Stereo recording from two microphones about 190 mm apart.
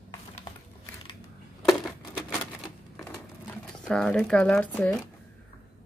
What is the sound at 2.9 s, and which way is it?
Sewing machine, 15° left (ahead or behind).